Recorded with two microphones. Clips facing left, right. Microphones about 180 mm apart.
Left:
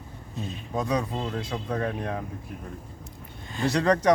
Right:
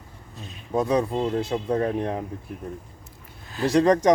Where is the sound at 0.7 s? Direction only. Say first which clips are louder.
Right 5 dB; 30° right (ahead or behind).